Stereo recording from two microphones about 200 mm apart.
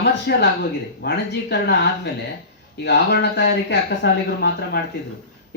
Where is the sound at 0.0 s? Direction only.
55° left (ahead or behind).